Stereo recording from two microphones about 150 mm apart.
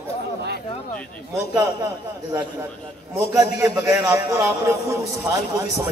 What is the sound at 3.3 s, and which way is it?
A man's voice, 20° right (ahead or behind).